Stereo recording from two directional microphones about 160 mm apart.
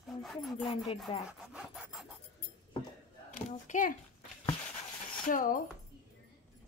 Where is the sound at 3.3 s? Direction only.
55° left (ahead or behind).